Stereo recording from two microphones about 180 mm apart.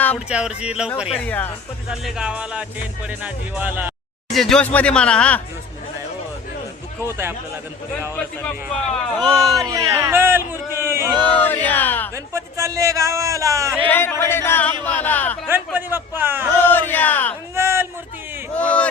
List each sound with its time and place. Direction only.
0.3 s speech: 5° right (ahead or behind)
1.2 s music: 10° left (ahead or behind)
1.9 s speech: 5° right (ahead or behind)
4.3 s speech: centre (ahead or behind)
7.1 s speech: 10° right (ahead or behind)
8.1 s music: 10° left (ahead or behind)
9.2 s speech: 20° right (ahead or behind)
11.2 s a sound: 10° left (ahead or behind)
12.1 s a man's voice: 15° right (ahead or behind)
13.8 s music: 10° left (ahead or behind)
15.4 s a man's voice: 10° right (ahead or behind)
16.6 s music: 10° left (ahead or behind)
17.5 s a sound: 15° right (ahead or behind)
18.5 s speech: 5° left (ahead or behind)